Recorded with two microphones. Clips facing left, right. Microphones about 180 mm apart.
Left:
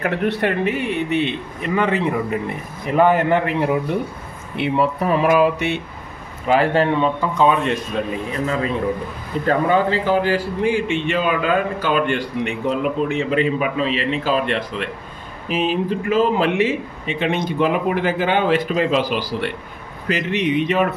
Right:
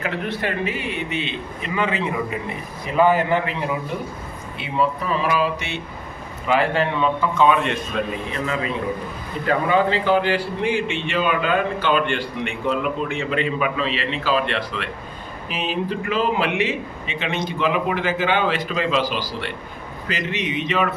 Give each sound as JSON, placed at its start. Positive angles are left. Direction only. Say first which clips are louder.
{"t": 0.0, "sound": "a man's voice", "louder": "left 5 dB", "side_deg": 60}
{"t": 6.4, "sound": "a man's voice", "louder": "left 3 dB", "side_deg": 40}
{"t": 10.0, "sound": "a man's voice", "louder": "left 1 dB", "side_deg": 40}